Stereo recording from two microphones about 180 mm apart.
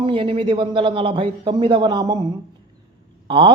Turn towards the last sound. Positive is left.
turn(degrees=-30)  # may be behind; listen again after turning